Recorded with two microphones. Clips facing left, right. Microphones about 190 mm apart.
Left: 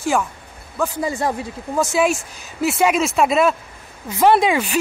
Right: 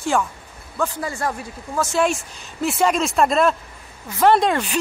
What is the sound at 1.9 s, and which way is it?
Speech, 5° left (ahead or behind).